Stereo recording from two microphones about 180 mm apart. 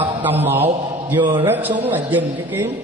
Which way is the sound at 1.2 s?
25° right (ahead or behind).